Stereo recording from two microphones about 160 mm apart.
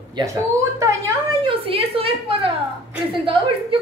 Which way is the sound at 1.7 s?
35° right (ahead or behind).